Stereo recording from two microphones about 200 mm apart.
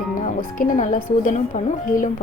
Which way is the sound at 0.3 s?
40° left (ahead or behind).